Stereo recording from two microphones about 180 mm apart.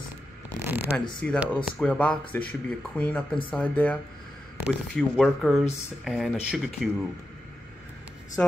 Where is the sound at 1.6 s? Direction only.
5° left (ahead or behind).